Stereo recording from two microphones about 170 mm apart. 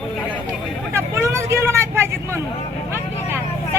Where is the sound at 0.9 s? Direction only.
15° right (ahead or behind).